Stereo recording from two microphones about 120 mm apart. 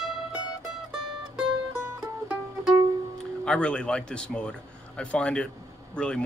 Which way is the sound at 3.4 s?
5° left (ahead or behind).